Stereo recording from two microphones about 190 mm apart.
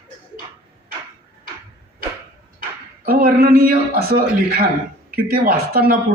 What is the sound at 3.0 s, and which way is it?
A man's voice, 50° right (ahead or behind).